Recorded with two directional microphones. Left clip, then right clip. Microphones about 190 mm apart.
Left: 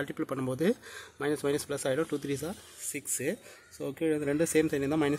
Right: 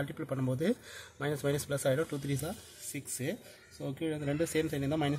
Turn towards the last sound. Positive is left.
turn(degrees=20)  # may be behind; listen again after turning